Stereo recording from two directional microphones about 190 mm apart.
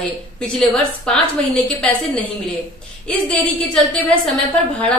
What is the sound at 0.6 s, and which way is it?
A woman's voice, 5° left (ahead or behind).